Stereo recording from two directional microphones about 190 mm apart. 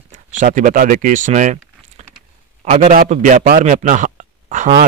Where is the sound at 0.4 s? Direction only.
45° right (ahead or behind).